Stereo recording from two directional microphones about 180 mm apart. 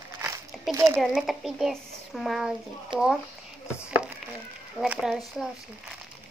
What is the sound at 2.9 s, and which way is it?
Speech, 25° right (ahead or behind).